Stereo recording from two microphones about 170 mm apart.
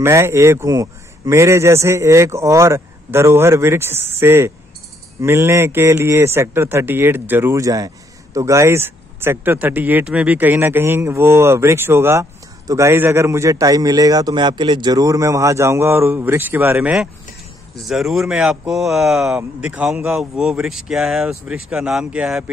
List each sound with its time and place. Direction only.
0.0 s speech: 15° right (ahead or behind)